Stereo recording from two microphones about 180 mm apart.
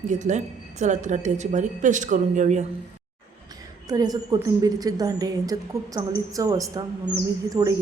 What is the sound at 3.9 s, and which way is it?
A woman's voice, 20° right (ahead or behind).